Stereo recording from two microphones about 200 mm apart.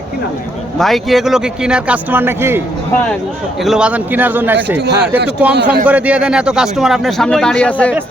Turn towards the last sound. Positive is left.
turn(degrees=5)  # may be behind; listen again after turning